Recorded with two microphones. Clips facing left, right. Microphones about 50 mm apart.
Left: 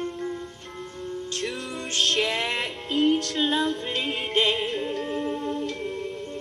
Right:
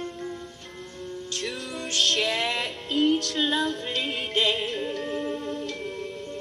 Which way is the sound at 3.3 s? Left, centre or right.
Centre.